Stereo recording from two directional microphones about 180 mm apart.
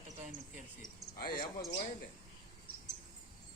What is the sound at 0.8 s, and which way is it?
Speech, 55° left (ahead or behind).